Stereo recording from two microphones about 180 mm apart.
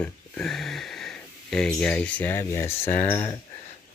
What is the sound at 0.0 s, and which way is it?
Speech, 5° left (ahead or behind).